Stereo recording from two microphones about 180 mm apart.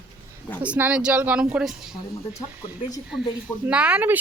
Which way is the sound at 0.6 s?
5° right (ahead or behind).